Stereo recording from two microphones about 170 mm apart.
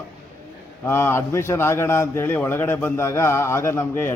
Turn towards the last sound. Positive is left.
turn(degrees=15)  # may be behind; listen again after turning